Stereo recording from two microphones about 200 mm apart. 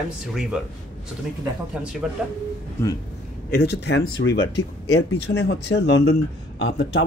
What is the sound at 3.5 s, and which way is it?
Speech, 55° left (ahead or behind).